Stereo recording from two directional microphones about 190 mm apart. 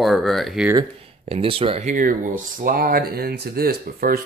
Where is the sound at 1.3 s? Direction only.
30° right (ahead or behind).